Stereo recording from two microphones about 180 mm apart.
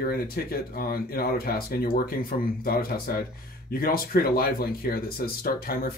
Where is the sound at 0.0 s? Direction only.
55° left (ahead or behind).